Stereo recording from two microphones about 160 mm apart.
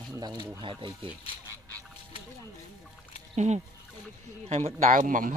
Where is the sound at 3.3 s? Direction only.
45° right (ahead or behind).